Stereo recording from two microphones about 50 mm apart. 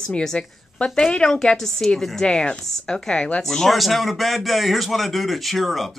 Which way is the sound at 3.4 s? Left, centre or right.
Centre.